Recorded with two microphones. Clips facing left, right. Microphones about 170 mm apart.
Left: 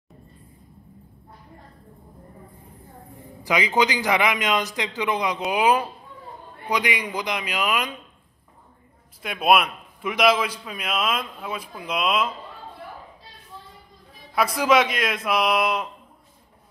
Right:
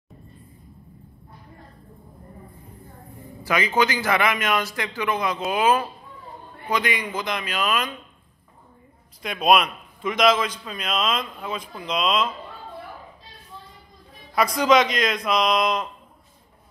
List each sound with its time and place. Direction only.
3.4 s a man's voice: 15° left (ahead or behind)
9.2 s a man's voice: 5° left (ahead or behind)
14.3 s a man's voice: 5° left (ahead or behind)